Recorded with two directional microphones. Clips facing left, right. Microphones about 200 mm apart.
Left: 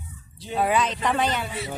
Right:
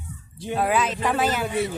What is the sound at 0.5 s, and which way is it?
Speech, centre (ahead or behind).